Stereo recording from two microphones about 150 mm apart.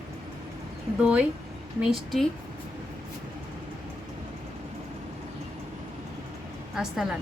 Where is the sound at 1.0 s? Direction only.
10° right (ahead or behind).